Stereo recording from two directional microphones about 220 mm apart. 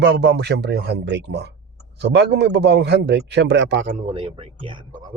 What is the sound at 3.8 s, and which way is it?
Speech, 35° right (ahead or behind).